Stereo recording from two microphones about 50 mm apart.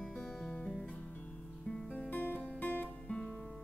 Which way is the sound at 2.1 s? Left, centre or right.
Left.